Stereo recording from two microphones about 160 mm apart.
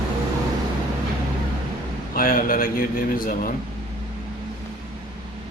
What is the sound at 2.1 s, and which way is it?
Speech, 65° left (ahead or behind).